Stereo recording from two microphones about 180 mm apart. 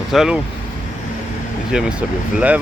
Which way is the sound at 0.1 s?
Centre (ahead or behind).